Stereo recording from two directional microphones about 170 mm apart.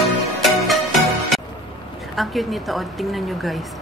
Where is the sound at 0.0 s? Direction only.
Centre (ahead or behind).